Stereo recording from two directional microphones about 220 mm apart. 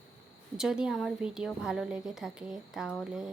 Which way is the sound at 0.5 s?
Centre (ahead or behind).